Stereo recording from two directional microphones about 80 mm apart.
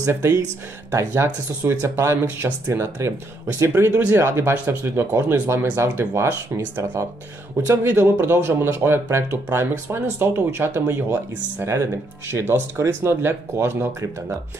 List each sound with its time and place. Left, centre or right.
0.1 s speech: right